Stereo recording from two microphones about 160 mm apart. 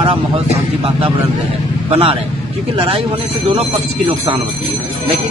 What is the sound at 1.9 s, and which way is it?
Speech, 35° right (ahead or behind).